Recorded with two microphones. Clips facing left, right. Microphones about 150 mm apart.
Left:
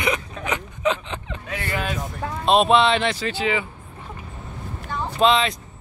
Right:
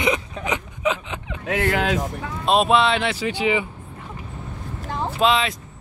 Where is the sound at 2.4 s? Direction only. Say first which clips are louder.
Left 1 dB; centre (ahead or behind).